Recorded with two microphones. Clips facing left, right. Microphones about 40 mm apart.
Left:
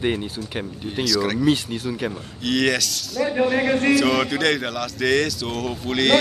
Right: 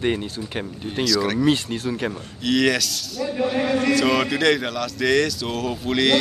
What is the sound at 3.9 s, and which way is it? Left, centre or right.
A man's voice, centre.